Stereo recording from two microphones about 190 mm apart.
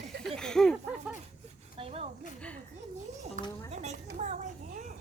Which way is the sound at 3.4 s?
45° right (ahead or behind).